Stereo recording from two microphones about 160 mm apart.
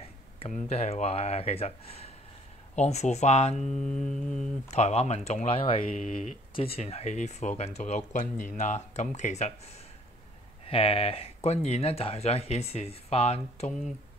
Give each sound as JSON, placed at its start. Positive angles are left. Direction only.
{"t": 0.7, "sound": "speech", "side_deg": 40}
{"t": 3.6, "sound": "music", "side_deg": 5}
{"t": 4.6, "sound": "speech", "side_deg": 45}
{"t": 13.7, "sound": "music", "side_deg": 5}